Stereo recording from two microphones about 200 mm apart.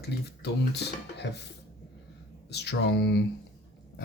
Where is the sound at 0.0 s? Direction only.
55° left (ahead or behind).